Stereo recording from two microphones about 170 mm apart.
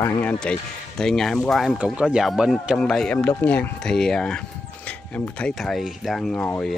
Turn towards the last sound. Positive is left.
turn(degrees=10)  # may be behind; listen again after turning